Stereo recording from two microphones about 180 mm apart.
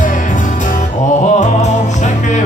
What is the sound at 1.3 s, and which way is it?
Music, 40° left (ahead or behind).